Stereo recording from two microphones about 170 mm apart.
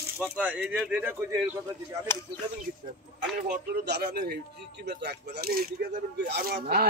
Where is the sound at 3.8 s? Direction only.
75° right (ahead or behind).